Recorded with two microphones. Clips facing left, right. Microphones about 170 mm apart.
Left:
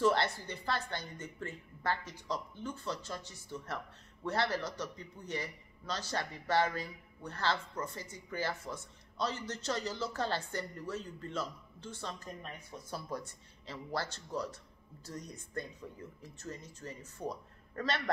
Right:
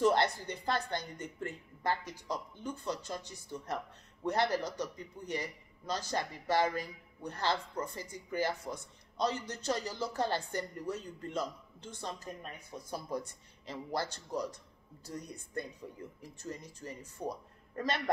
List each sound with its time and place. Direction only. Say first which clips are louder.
0.0 s speech: right 2 dB; 15° right (ahead or behind)
16.2 s speech: right 3 dB; 15° right (ahead or behind)